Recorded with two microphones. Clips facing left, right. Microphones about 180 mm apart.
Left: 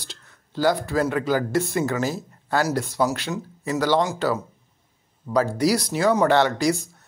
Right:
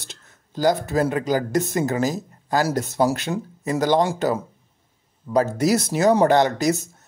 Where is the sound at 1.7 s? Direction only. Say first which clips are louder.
Right 2 dB; 40° right (ahead or behind).